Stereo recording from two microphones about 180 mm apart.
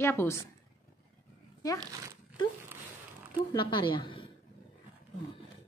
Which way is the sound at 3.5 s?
25° left (ahead or behind).